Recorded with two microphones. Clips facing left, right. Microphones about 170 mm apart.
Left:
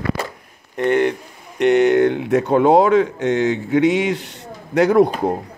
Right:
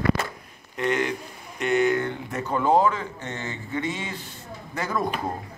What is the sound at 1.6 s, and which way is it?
Speech, 70° left (ahead or behind).